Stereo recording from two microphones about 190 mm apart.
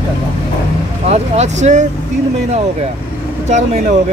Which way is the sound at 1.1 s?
35° right (ahead or behind).